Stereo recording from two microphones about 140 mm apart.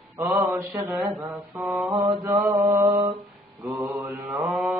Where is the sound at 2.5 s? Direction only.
25° right (ahead or behind).